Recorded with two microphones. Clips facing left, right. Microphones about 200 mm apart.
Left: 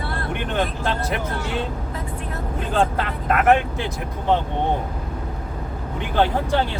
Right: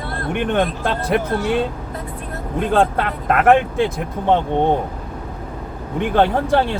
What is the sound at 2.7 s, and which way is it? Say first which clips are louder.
Speech: right 4 dB; 55° right (ahead or behind).